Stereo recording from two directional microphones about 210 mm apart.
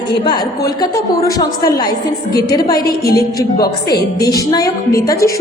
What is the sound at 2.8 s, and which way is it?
Speech, 45° left (ahead or behind).